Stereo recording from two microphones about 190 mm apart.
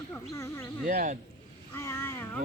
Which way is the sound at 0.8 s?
40° right (ahead or behind).